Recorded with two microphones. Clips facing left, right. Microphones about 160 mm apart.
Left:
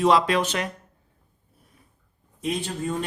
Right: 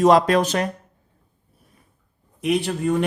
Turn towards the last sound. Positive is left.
turn(degrees=-70)  # may be behind; listen again after turning